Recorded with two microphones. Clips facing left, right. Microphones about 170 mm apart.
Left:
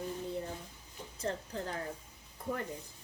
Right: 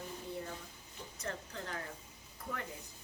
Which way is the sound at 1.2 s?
30° left (ahead or behind).